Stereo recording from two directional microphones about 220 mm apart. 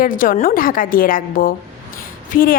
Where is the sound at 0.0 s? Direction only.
40° left (ahead or behind).